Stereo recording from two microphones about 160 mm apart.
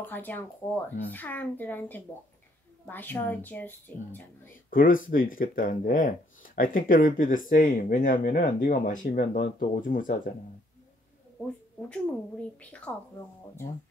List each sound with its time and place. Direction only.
0.0 s speech: 10° left (ahead or behind)
4.6 s speech: 60° left (ahead or behind)
11.9 s speech: 10° left (ahead or behind)